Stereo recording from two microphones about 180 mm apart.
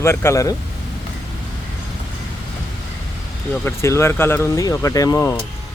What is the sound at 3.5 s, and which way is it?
Speech, 10° left (ahead or behind).